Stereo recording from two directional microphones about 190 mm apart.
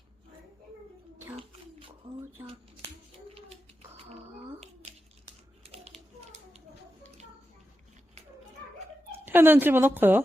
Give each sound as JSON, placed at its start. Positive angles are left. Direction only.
{"t": 3.3, "sound": "a sound", "side_deg": -30}
{"t": 5.6, "sound": "typing", "side_deg": -30}
{"t": 9.2, "sound": "a woman's voice", "side_deg": -10}